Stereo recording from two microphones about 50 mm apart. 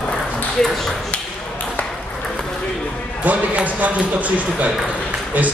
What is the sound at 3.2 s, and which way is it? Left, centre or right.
Speech, right.